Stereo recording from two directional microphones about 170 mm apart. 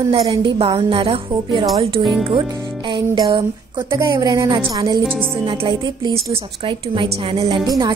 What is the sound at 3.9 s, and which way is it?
A woman's voice, 20° right (ahead or behind).